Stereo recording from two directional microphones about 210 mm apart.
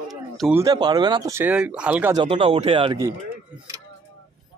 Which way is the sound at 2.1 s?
25° right (ahead or behind).